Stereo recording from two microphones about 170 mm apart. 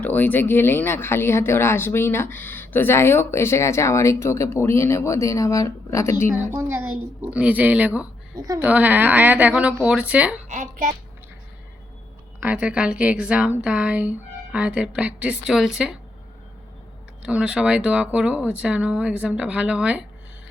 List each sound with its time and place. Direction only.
0.0 s speech: 10° left (ahead or behind)
6.5 s a woman's voice: 15° right (ahead or behind)
10.5 s a woman's voice: 45° right (ahead or behind)
12.4 s a woman's voice: 10° right (ahead or behind)
17.2 s speech: 5° right (ahead or behind)